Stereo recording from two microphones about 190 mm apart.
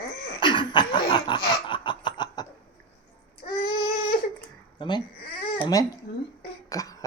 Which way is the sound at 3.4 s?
35° left (ahead or behind).